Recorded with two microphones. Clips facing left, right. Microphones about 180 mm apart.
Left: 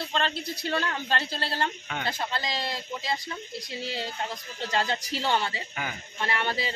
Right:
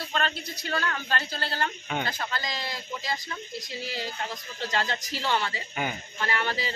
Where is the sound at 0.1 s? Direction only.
30° left (ahead or behind).